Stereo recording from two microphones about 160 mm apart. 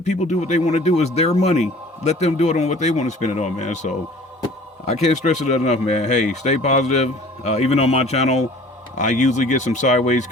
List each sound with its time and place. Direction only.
0.0 s speech: 45° left (ahead or behind)